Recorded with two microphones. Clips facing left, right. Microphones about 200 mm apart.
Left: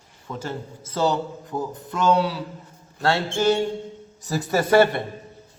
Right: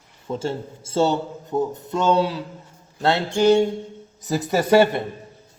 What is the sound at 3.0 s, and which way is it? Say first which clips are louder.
Music: right 2 dB; 20° right (ahead or behind).